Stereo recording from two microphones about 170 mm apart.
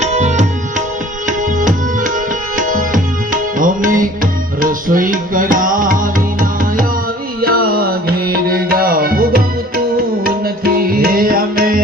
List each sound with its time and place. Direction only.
0.0 s music: 45° right (ahead or behind)
2.6 s music: 50° right (ahead or behind)